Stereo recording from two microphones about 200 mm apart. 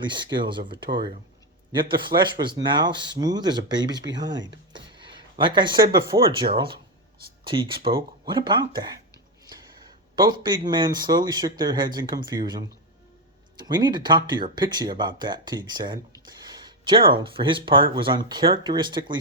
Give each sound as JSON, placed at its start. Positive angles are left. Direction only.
{"t": 0.0, "sound": "speech", "side_deg": -25}
{"t": 10.2, "sound": "speech", "side_deg": -20}